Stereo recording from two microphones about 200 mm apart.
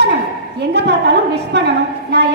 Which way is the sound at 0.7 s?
55° right (ahead or behind).